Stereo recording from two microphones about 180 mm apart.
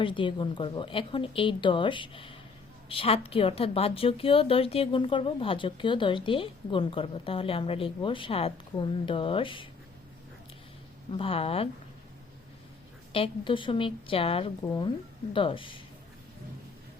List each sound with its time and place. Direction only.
0.0 s a woman's voice: 30° left (ahead or behind)
11.1 s a woman's voice: 30° left (ahead or behind)
13.1 s a woman's voice: 30° left (ahead or behind)